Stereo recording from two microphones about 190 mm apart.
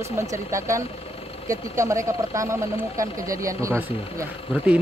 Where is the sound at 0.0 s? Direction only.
15° right (ahead or behind).